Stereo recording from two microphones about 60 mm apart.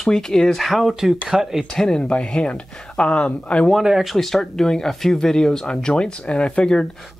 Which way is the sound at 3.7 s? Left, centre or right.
Centre.